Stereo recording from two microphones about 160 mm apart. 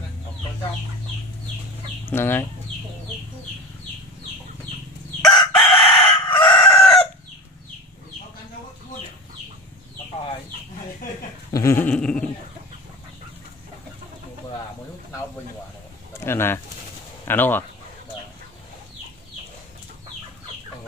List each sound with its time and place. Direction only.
2.0 s speech: 15° left (ahead or behind)
5.2 s chicken: 30° left (ahead or behind)
11.5 s dog: 15° left (ahead or behind)
16.1 s bird: 15° left (ahead or behind)
17.2 s speech: 15° left (ahead or behind)